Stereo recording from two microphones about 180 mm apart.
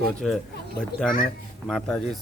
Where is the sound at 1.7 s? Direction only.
5° left (ahead or behind).